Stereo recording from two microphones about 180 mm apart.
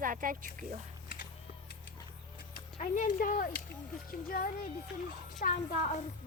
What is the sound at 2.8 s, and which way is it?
Speech, 45° left (ahead or behind).